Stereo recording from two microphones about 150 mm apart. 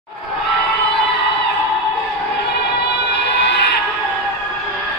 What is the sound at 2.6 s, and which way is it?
Music, 90° left.